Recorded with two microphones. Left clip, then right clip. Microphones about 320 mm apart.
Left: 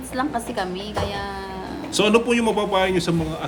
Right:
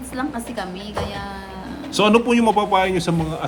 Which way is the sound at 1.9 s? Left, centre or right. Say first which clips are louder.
Right 2 dB; centre.